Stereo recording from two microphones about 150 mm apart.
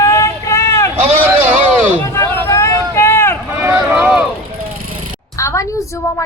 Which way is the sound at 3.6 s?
15° right (ahead or behind).